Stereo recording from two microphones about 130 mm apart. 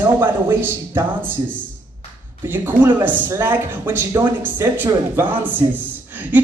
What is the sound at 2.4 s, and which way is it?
A woman's voice, 15° right (ahead or behind).